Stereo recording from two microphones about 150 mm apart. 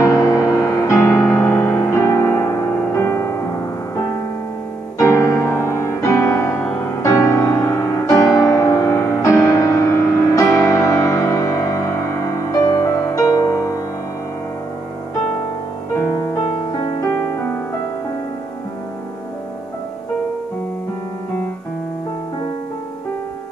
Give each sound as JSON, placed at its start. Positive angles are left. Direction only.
{"t": 0.0, "sound": "music", "side_deg": 25}
{"t": 4.9, "sound": "music", "side_deg": 20}